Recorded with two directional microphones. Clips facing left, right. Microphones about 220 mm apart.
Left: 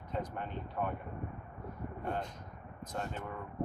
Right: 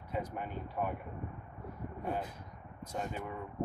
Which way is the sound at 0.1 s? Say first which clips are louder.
Right 1 dB; 10° right (ahead or behind).